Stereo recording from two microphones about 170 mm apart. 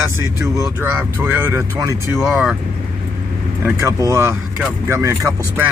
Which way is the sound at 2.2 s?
5° right (ahead or behind).